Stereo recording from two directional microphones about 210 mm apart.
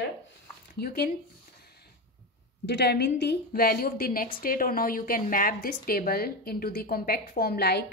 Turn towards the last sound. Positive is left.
turn(degrees=50)  # may be behind; listen again after turning